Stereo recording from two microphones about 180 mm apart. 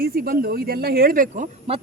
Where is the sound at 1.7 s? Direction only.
35° right (ahead or behind).